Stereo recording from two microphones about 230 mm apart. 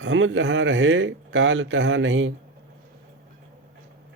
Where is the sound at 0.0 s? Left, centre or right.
Right.